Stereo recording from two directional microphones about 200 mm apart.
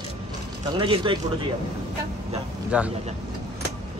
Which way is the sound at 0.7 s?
25° right (ahead or behind).